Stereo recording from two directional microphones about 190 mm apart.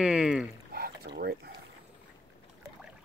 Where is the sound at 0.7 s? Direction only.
55° right (ahead or behind).